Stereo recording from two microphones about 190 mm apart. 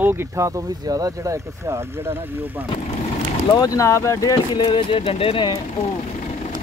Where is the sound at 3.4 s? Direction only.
20° left (ahead or behind).